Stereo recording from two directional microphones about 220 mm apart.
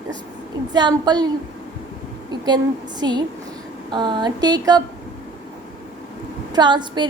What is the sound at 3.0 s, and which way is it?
A woman's voice, 20° right (ahead or behind).